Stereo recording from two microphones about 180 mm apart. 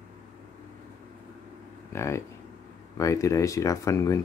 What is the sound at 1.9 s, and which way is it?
Speech, 15° left (ahead or behind).